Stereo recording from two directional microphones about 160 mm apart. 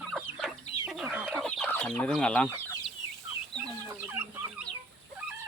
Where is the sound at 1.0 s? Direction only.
10° right (ahead or behind).